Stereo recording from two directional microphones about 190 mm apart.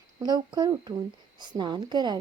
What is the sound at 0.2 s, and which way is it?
Speech, 20° right (ahead or behind).